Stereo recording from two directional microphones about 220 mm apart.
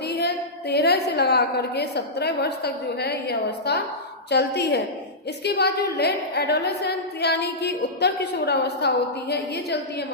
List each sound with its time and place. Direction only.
0.1 s a woman's voice: 45° left (ahead or behind)